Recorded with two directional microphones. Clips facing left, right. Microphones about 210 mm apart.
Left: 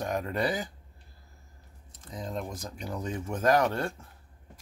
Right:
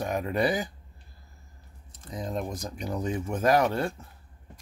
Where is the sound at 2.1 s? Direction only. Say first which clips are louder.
Right 3 dB; 15° right (ahead or behind).